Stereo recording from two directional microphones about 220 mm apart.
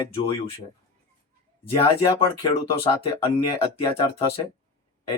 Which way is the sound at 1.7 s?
20° left (ahead or behind).